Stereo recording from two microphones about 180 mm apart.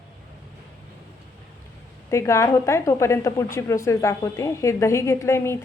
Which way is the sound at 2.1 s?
15° left (ahead or behind).